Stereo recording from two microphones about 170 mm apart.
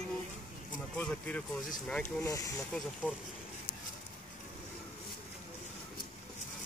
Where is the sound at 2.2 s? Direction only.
20° left (ahead or behind).